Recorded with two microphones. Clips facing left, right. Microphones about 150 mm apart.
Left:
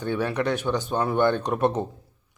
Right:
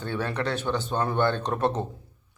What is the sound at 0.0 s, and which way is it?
Speech, 15° left (ahead or behind).